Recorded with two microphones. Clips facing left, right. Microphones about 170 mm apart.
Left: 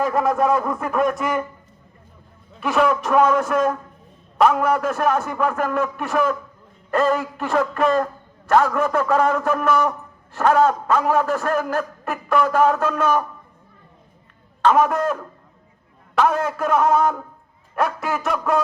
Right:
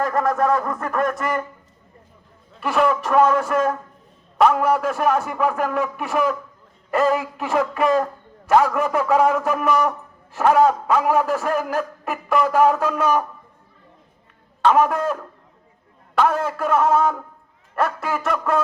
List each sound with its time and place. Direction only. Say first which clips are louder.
0.0 s a man's voice: left 1 dB; 5° left (ahead or behind)
2.6 s a man's voice: left 1 dB; centre (ahead or behind)
14.6 s a man's voice: even; centre (ahead or behind)